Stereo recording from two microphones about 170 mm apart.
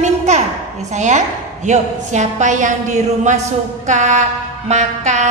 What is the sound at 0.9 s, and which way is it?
A woman's voice, 45° right (ahead or behind).